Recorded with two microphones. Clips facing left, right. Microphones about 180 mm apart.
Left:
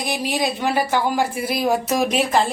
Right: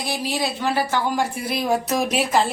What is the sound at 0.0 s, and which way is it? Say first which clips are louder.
A woman's voice: left 2 dB; 15° left (ahead or behind).